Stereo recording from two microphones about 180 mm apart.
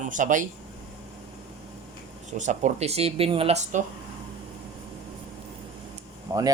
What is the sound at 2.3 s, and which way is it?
Speech, 40° right (ahead or behind).